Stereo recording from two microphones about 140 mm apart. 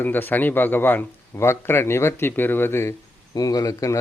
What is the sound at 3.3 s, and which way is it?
Speech, 25° left (ahead or behind).